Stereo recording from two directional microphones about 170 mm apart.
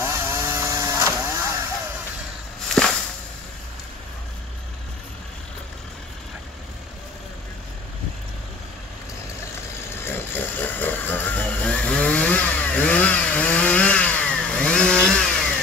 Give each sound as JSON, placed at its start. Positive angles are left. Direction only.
{"t": 0.0, "sound": "chainsaw", "side_deg": -15}
{"t": 2.8, "sound": "a sound", "side_deg": 5}
{"t": 10.0, "sound": "chainsaw", "side_deg": 10}